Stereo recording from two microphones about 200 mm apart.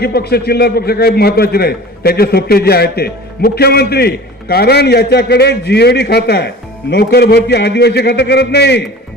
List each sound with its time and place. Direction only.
0.0 s a man's voice: 50° left (ahead or behind)